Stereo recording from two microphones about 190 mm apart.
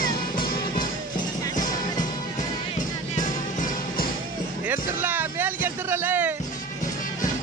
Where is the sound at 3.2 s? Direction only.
45° left (ahead or behind).